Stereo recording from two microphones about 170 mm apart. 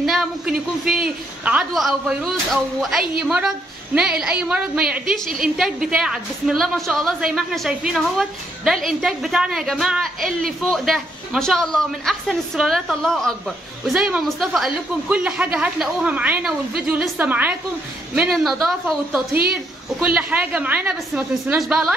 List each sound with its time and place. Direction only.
0.0 s a woman's voice: centre (ahead or behind)